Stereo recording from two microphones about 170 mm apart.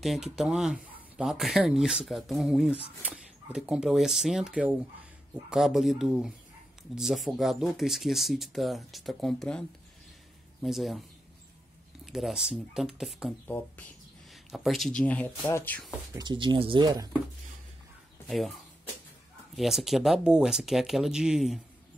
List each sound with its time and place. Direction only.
0.0 s speech: centre (ahead or behind)
12.1 s speech: centre (ahead or behind)
13.5 s speech: 10° left (ahead or behind)
16.2 s speech: 25° right (ahead or behind)
19.5 s speech: centre (ahead or behind)